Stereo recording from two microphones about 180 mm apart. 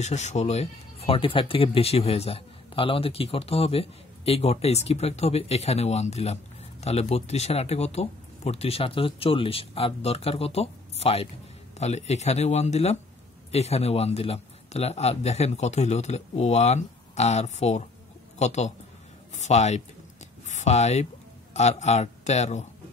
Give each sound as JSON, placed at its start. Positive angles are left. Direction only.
{"t": 0.0, "sound": "speech", "side_deg": 40}